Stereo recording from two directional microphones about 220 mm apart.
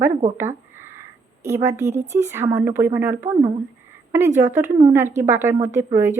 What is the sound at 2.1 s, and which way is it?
A woman's voice, 10° right (ahead or behind).